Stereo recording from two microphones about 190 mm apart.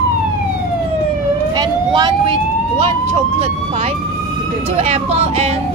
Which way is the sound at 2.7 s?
35° right (ahead or behind).